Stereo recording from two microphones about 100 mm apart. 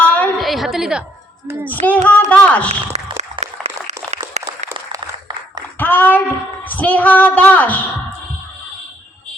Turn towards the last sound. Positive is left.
turn(degrees=15)  # may be behind; listen again after turning